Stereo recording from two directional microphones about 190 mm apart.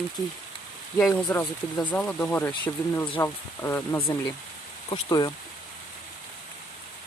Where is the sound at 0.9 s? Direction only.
Centre (ahead or behind); by 5.3 s 20° left (ahead or behind).